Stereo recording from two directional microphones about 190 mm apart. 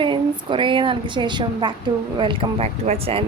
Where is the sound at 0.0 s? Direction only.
25° right (ahead or behind).